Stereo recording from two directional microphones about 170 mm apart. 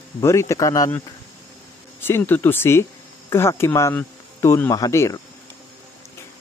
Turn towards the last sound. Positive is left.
turn(degrees=20)  # may be behind; listen again after turning